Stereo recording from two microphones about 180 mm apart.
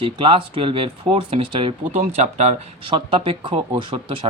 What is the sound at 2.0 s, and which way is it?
Speech, 40° right (ahead or behind).